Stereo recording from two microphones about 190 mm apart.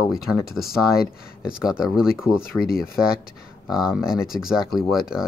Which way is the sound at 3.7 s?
Centre (ahead or behind).